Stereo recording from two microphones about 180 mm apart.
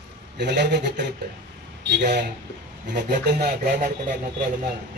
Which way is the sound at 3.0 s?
65° right (ahead or behind).